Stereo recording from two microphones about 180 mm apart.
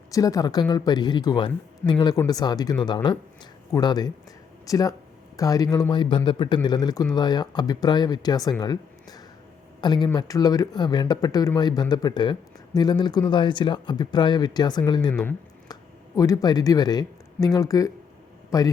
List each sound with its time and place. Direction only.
0.1 s speech: 20° left (ahead or behind)
15.1 s speech: 10° left (ahead or behind)